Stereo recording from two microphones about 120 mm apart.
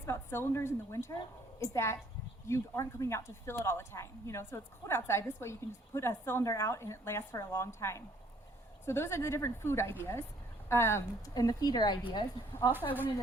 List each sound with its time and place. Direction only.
0.0 s a woman's voice: 20° left (ahead or behind); by 12.2 s 35° left (ahead or behind)